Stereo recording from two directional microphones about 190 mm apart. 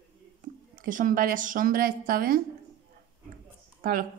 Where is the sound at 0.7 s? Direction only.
45° right (ahead or behind).